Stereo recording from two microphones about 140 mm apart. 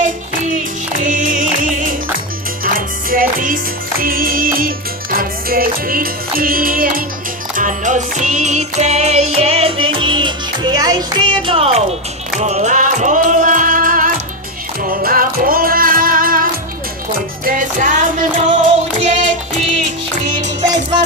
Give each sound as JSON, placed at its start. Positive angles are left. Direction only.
{"t": 0.0, "sound": "music", "side_deg": -60}
{"t": 2.7, "sound": "music", "side_deg": -90}
{"t": 7.5, "sound": "music", "side_deg": -65}
{"t": 12.4, "sound": "music", "side_deg": -55}
{"t": 14.8, "sound": "music", "side_deg": -90}
{"t": 19.0, "sound": "child singing", "side_deg": -55}
{"t": 20.6, "sound": "music", "side_deg": -30}